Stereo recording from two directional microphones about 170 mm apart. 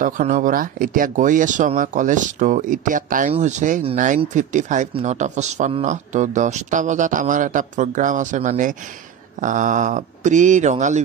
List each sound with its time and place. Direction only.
0.0 s speech: 50° right (ahead or behind)